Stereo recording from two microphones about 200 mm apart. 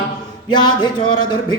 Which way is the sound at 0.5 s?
20° left (ahead or behind).